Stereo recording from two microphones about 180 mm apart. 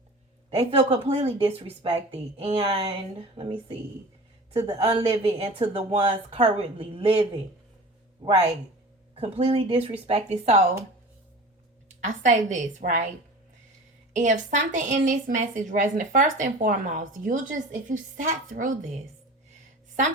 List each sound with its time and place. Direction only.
0.5 s a woman's voice: 35° right (ahead or behind)
9.1 s a woman's voice: 30° right (ahead or behind)
11.9 s a woman's voice: 45° right (ahead or behind)
14.2 s a woman's voice: 45° right (ahead or behind)